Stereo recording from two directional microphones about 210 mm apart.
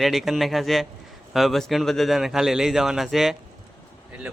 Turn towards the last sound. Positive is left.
turn(degrees=0)  # may be behind; listen again after turning